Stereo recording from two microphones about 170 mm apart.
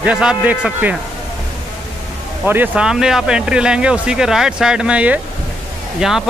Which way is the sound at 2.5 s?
10° right (ahead or behind).